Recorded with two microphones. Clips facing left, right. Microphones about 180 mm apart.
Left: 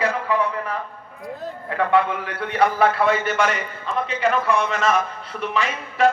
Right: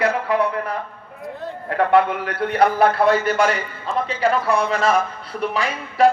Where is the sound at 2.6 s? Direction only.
35° right (ahead or behind).